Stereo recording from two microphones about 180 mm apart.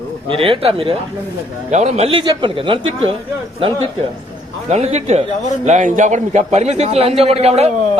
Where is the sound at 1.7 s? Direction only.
40° right (ahead or behind).